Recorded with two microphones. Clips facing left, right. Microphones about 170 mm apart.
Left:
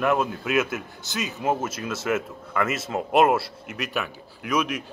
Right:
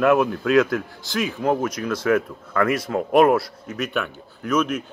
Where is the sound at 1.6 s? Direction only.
25° left (ahead or behind).